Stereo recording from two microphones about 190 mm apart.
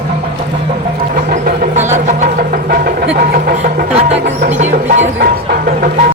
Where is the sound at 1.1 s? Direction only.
45° right (ahead or behind).